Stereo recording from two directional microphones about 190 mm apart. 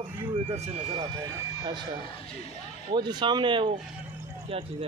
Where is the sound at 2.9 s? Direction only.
25° right (ahead or behind).